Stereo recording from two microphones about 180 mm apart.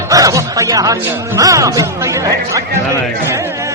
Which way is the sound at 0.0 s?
20° right (ahead or behind).